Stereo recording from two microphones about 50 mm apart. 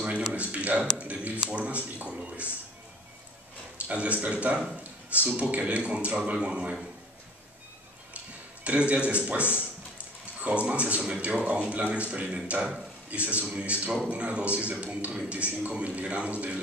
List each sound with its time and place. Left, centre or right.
0.0 s speech: right
3.7 s a man's voice: right
8.6 s a man's voice: right